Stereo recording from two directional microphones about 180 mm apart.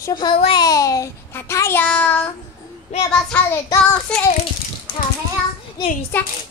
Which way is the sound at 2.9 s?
35° left (ahead or behind).